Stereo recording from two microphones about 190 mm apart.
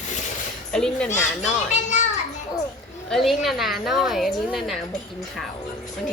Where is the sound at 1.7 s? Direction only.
40° left (ahead or behind).